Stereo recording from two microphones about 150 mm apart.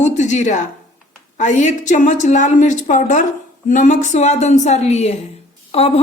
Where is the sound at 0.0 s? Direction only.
55° left (ahead or behind).